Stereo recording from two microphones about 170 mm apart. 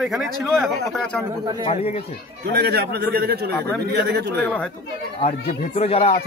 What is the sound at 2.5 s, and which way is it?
A man's voice, 70° right (ahead or behind).